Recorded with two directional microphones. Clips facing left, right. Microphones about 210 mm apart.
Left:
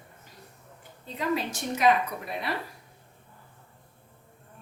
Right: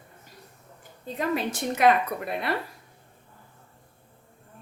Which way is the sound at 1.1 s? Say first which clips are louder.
Right 2 dB; 55° right (ahead or behind).